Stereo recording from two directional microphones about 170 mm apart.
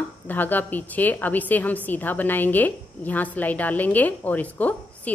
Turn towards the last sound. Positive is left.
turn(degrees=10)  # may be behind; listen again after turning